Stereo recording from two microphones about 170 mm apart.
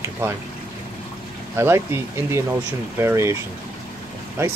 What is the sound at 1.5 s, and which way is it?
Speech, 15° right (ahead or behind).